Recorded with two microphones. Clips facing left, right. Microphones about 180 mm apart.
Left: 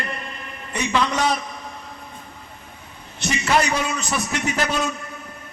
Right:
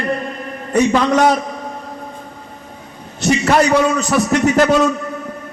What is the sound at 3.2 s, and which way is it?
A man's voice, 45° right (ahead or behind).